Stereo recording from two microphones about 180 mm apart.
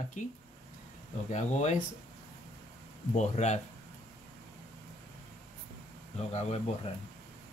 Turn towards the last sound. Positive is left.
turn(degrees=35)  # may be behind; listen again after turning